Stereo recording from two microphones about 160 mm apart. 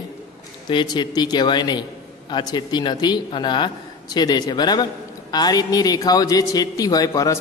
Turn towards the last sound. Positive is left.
turn(degrees=20)  # may be behind; listen again after turning